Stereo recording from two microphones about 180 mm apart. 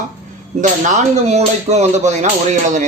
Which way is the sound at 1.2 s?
40° right (ahead or behind).